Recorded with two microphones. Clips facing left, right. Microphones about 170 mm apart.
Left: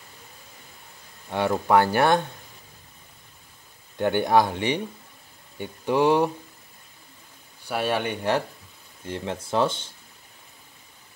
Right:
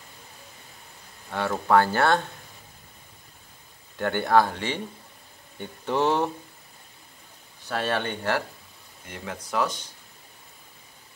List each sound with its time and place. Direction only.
1.3 s speech: 15° left (ahead or behind)
4.0 s speech: 15° left (ahead or behind)
7.6 s speech: 10° left (ahead or behind)
9.0 s speech: 30° left (ahead or behind)